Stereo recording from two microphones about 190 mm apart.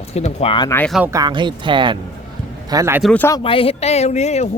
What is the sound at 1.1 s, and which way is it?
Speech, 20° right (ahead or behind).